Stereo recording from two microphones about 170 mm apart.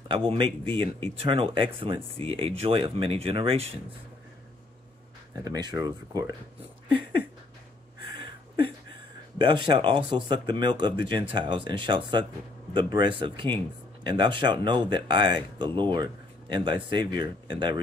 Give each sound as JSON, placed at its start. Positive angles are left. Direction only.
{"t": 0.1, "sound": "speech", "side_deg": -30}
{"t": 5.4, "sound": "speech", "side_deg": -25}
{"t": 8.2, "sound": "a sound", "side_deg": -30}
{"t": 9.4, "sound": "speech", "side_deg": -25}